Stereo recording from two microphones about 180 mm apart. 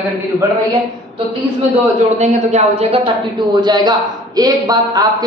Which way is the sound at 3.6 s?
25° right (ahead or behind).